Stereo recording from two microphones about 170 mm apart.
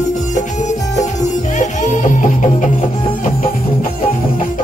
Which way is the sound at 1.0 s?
45° left (ahead or behind).